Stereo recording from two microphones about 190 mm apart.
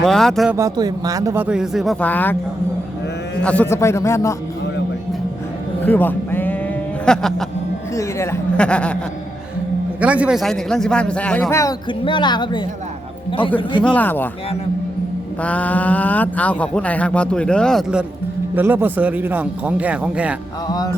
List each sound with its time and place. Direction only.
0.0 s a man's voice: centre (ahead or behind)
0.5 s speech: 20° right (ahead or behind); by 2.3 s 10° left (ahead or behind)
3.4 s speech: 10° left (ahead or behind)
5.8 s music: 10° left (ahead or behind)
7.9 s speech: 15° left (ahead or behind)
10.0 s a man's voice: 5° right (ahead or behind); by 11.7 s 10° left (ahead or behind)
11.9 s a woman's voice: 25° left (ahead or behind)
13.8 s speech: 10° left (ahead or behind)
15.4 s speech: 10° left (ahead or behind)
18.5 s speech: 10° right (ahead or behind)
20.7 s a woman's voice: 20° left (ahead or behind)